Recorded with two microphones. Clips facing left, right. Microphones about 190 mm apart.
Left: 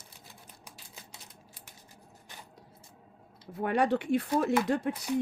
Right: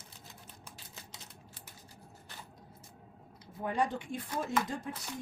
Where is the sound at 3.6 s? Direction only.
70° left (ahead or behind).